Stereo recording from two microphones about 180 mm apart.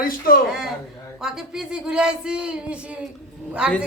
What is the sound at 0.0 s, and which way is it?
Speech, 50° left (ahead or behind).